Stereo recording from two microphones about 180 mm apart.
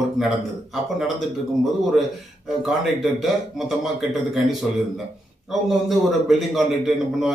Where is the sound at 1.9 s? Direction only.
Centre (ahead or behind).